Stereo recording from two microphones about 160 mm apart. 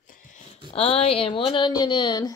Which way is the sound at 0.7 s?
40° left (ahead or behind).